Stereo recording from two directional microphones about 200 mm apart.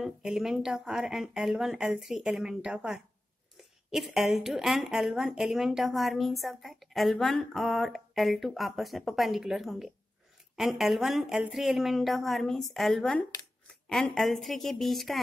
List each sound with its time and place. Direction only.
0.0 s speech: centre (ahead or behind)